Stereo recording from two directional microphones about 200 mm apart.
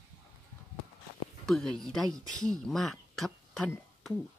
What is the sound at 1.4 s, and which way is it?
Speech, centre (ahead or behind).